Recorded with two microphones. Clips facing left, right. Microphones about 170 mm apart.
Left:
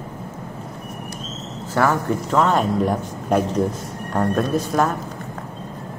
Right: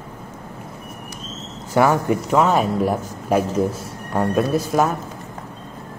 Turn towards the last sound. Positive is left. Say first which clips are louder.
# right 1 dB
turn(degrees=-5)  # may be behind; listen again after turning